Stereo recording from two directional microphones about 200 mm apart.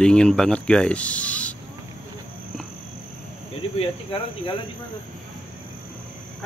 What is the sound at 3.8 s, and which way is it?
Cricket, 25° left (ahead or behind).